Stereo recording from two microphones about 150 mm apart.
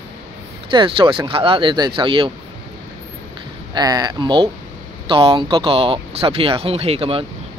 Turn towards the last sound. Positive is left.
turn(degrees=-40)  # may be behind; listen again after turning